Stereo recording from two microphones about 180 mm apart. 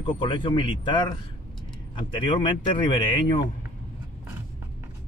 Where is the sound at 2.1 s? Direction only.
25° left (ahead or behind).